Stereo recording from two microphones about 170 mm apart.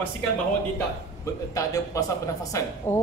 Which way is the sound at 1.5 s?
20° left (ahead or behind).